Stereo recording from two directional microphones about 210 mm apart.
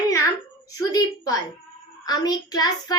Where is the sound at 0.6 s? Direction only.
15° left (ahead or behind).